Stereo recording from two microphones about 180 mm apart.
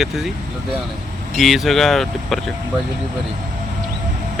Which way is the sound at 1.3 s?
Centre (ahead or behind).